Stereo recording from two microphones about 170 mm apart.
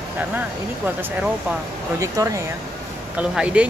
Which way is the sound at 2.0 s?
20° right (ahead or behind).